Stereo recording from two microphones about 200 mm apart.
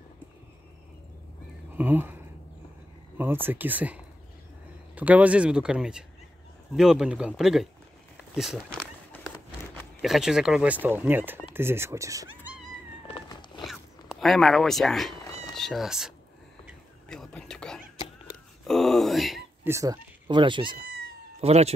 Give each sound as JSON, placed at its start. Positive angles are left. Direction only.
{"t": 1.8, "sound": "speech", "side_deg": -10}
{"t": 3.4, "sound": "speech", "side_deg": -10}
{"t": 8.4, "sound": "a sound", "side_deg": 0}
{"t": 10.0, "sound": "speech", "side_deg": 0}
{"t": 13.1, "sound": "cat", "side_deg": 20}
{"t": 13.7, "sound": "speech", "side_deg": 0}
{"t": 16.6, "sound": "whispering", "side_deg": 0}
{"t": 18.7, "sound": "speech", "side_deg": 0}
{"t": 19.6, "sound": "speech", "side_deg": -15}